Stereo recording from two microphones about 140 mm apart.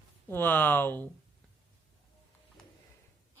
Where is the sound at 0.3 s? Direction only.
15° left (ahead or behind).